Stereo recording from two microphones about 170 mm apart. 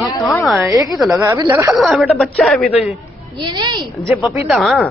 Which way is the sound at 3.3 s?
25° right (ahead or behind).